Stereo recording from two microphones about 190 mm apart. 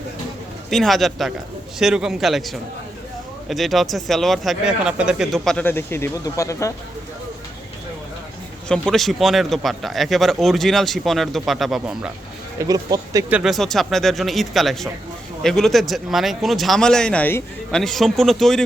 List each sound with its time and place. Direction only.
0.7 s speech: centre (ahead or behind); by 6.7 s 15° left (ahead or behind)
8.6 s speech: 5° left (ahead or behind)
12.5 s speech: 20° right (ahead or behind)
13.3 s speech: centre (ahead or behind)